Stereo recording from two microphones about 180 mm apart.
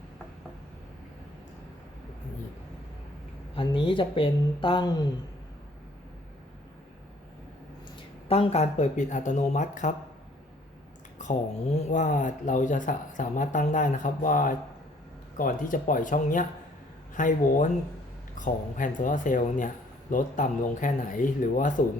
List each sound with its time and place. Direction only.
3.5 s speech: 30° left (ahead or behind)
8.3 s speech: 35° left (ahead or behind)
11.2 s speech: 40° left (ahead or behind)